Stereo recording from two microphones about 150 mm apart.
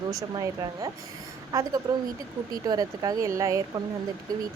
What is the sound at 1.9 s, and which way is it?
Speech, 25° right (ahead or behind).